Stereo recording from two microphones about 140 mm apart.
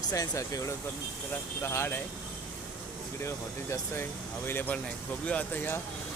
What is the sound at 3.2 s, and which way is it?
Speech, 20° left (ahead or behind).